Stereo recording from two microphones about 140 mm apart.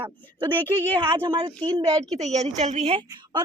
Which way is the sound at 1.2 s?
35° right (ahead or behind).